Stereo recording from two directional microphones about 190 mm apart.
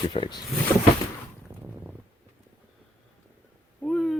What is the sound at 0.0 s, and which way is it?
Speech, 25° left (ahead or behind).